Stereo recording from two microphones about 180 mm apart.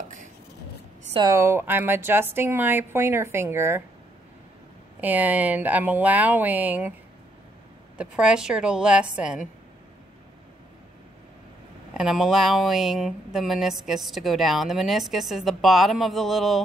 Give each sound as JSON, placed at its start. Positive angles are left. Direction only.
{"t": 1.1, "sound": "a woman's voice", "side_deg": -20}
{"t": 5.0, "sound": "a woman's voice", "side_deg": -10}
{"t": 8.0, "sound": "speech", "side_deg": -5}
{"t": 12.0, "sound": "speech", "side_deg": -5}